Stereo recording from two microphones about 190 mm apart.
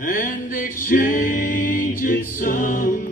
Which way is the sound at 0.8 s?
50° left (ahead or behind).